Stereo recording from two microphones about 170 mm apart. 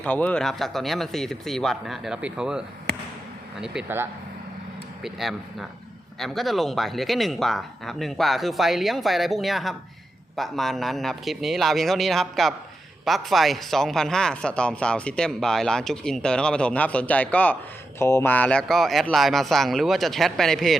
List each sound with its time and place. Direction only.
0.0 s speech: 10° left (ahead or behind); by 4.1 s 10° right (ahead or behind)
5.0 s speech: centre (ahead or behind)